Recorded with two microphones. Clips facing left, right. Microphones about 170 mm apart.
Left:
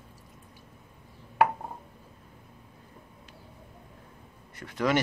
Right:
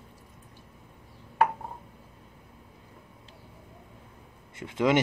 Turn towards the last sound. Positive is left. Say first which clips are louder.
# right 3 dB
turn(degrees=-20)  # may be behind; listen again after turning